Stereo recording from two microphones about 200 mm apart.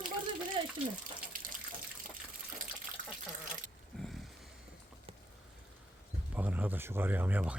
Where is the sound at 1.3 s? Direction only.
45° right (ahead or behind).